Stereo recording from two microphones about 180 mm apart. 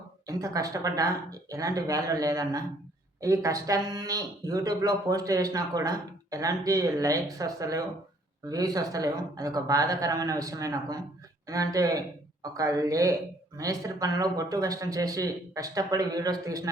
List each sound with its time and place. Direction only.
0.3 s speech: 20° right (ahead or behind)